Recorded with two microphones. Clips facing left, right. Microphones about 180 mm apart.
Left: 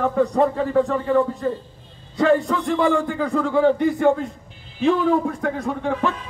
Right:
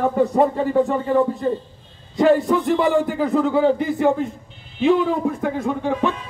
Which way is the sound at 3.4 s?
5° right (ahead or behind).